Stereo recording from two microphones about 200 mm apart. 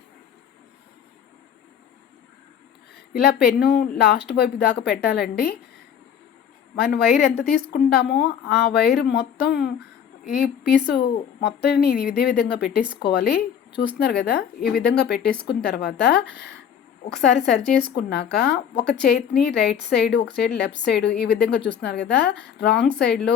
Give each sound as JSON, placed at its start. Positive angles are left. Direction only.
{"t": 3.1, "sound": "speech", "side_deg": 50}
{"t": 6.7, "sound": "a woman's voice", "side_deg": 50}
{"t": 17.9, "sound": "a woman's voice", "side_deg": 55}